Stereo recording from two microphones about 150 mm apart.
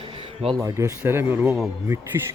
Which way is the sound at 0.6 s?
20° right (ahead or behind).